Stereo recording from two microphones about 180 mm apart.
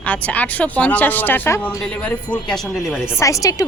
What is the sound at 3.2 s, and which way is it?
Speech, 20° left (ahead or behind).